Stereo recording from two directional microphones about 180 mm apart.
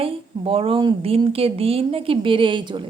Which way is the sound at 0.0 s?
30° right (ahead or behind).